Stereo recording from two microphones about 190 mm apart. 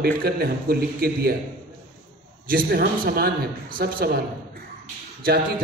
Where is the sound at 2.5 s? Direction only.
55° right (ahead or behind).